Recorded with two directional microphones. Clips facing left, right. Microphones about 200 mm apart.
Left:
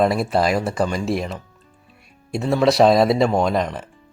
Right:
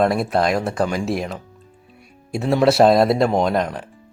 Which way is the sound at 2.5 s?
5° right (ahead or behind).